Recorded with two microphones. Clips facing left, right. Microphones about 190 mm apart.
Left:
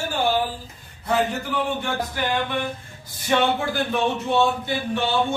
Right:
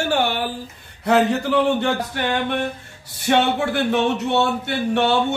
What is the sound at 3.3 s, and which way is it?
Speech, 70° right (ahead or behind).